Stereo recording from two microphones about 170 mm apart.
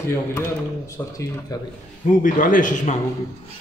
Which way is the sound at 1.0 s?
15° left (ahead or behind).